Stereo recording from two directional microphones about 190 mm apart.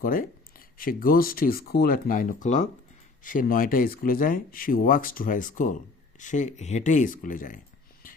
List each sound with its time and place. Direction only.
0.0 s speech: 50° left (ahead or behind)